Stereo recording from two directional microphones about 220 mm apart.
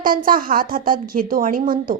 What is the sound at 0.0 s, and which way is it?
A woman's voice, 40° right (ahead or behind).